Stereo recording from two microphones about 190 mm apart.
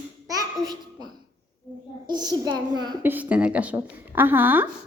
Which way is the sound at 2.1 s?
20° right (ahead or behind).